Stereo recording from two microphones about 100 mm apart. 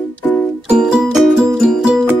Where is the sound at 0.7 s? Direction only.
10° right (ahead or behind).